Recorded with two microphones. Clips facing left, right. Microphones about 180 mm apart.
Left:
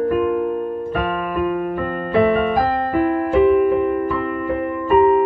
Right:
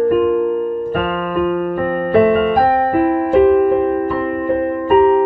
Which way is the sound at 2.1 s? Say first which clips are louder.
Right 4 dB; 60° right (ahead or behind).